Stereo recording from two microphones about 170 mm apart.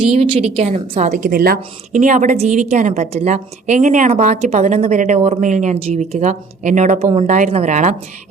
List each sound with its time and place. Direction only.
0.1 s a woman's voice: 35° right (ahead or behind)